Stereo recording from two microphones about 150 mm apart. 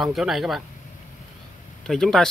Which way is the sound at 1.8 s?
5° left (ahead or behind).